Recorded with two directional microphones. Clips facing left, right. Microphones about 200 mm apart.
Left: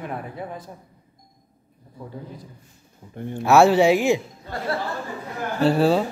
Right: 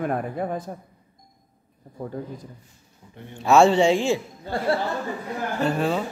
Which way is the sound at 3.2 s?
50° left (ahead or behind).